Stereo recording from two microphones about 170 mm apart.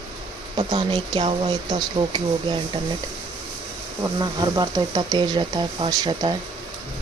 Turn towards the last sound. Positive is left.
turn(degrees=-25)  # may be behind; listen again after turning